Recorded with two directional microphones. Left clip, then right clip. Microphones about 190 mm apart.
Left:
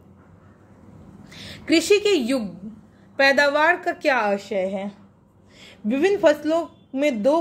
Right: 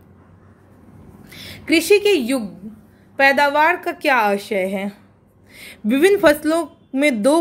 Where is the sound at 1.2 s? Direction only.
5° right (ahead or behind).